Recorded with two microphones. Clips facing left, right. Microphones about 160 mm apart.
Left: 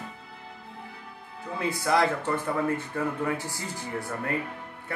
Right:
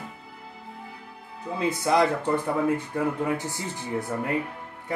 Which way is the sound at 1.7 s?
20° right (ahead or behind).